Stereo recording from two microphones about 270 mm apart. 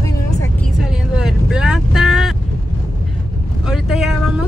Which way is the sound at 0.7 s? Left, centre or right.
Centre.